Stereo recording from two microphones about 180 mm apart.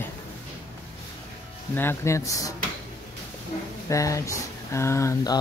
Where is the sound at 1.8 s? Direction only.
15° left (ahead or behind).